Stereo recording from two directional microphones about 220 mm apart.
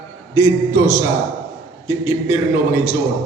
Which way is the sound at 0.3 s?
15° right (ahead or behind).